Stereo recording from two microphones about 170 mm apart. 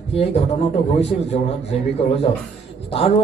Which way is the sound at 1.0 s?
35° left (ahead or behind).